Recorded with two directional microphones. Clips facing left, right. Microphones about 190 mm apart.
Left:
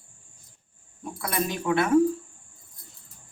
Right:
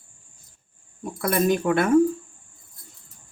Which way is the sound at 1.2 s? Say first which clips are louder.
Right 7 dB; 50° right (ahead or behind).